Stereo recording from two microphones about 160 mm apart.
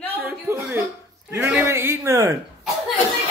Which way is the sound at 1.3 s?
15° right (ahead or behind).